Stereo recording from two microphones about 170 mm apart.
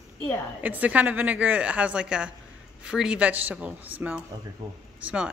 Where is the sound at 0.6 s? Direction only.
10° right (ahead or behind).